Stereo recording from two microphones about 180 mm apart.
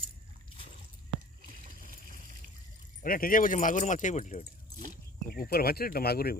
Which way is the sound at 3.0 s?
50° left (ahead or behind).